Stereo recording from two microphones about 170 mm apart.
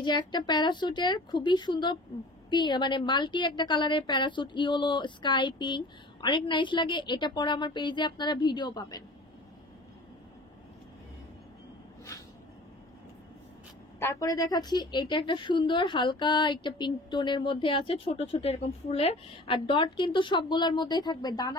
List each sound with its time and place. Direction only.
0.0 s a woman's voice: 25° left (ahead or behind)
13.9 s a woman's voice: 15° left (ahead or behind)